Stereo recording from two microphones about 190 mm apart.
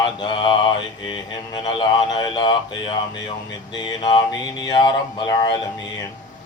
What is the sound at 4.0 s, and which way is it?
Speech, 25° left (ahead or behind).